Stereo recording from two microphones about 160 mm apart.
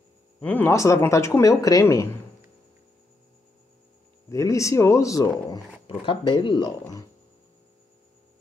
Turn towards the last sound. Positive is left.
turn(degrees=25)  # may be behind; listen again after turning